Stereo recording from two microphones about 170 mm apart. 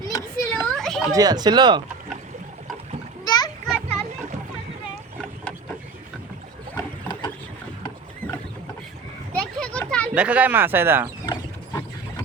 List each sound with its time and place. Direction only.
0.1 s children playing: 15° left (ahead or behind)
1.1 s speech: 25° right (ahead or behind)
3.2 s a sound: 25° left (ahead or behind)
3.7 s a sound: 5° left (ahead or behind)
6.7 s pig: 25° left (ahead or behind)
9.6 s children playing: 5° left (ahead or behind)
10.2 s speech: 10° right (ahead or behind)
11.3 s mechanisms: 25° left (ahead or behind)